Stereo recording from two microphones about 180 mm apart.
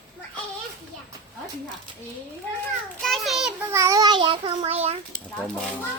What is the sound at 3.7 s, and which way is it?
A child's voice, 15° right (ahead or behind).